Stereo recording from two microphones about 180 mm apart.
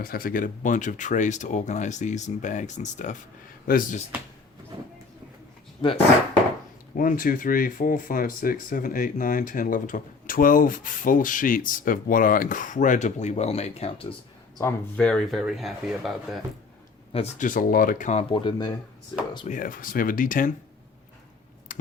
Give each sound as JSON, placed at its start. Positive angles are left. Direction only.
{"t": 0.0, "sound": "speech", "side_deg": 55}
{"t": 3.7, "sound": "speech", "side_deg": 50}
{"t": 4.7, "sound": "vehicle", "side_deg": -25}
{"t": 6.9, "sound": "speech", "side_deg": 50}
{"t": 14.6, "sound": "speech", "side_deg": 10}
{"t": 17.1, "sound": "speech", "side_deg": 35}
{"t": 19.5, "sound": "speech", "side_deg": 50}
{"t": 21.7, "sound": "finger snapping", "side_deg": 45}